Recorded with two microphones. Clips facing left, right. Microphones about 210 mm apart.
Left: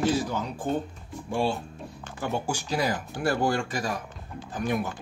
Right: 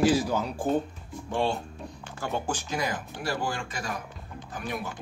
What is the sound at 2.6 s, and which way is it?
Speech, 35° left (ahead or behind).